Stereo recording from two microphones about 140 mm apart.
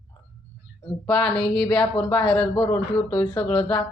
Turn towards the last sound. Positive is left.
turn(degrees=10)  # may be behind; listen again after turning